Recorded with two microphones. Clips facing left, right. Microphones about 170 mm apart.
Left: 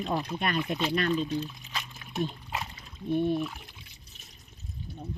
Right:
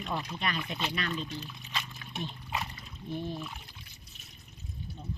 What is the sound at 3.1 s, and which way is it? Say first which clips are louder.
Speech: left 10 dB; 60° left (ahead or behind).